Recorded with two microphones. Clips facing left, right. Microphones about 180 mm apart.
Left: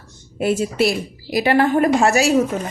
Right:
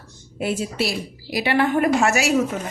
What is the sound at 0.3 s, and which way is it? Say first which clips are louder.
A woman's voice: left 5 dB; 45° left (ahead or behind).